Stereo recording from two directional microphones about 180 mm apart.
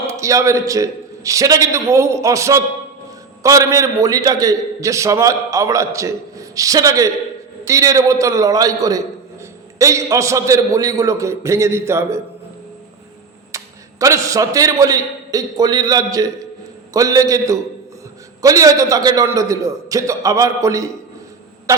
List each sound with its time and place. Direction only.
0.1 s a man's voice: 15° right (ahead or behind)
13.5 s a sound: 15° right (ahead or behind)
14.0 s a man's voice: 20° right (ahead or behind)